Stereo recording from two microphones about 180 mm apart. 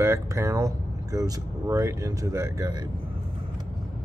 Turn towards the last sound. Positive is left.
turn(degrees=-20)  # may be behind; listen again after turning